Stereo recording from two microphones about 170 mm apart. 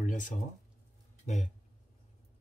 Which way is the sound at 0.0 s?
50° left (ahead or behind).